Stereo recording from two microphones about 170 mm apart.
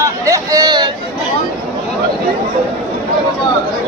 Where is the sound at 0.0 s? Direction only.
20° right (ahead or behind).